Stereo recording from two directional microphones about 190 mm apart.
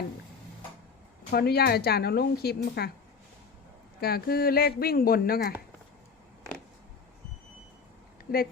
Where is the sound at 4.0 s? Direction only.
55° left (ahead or behind).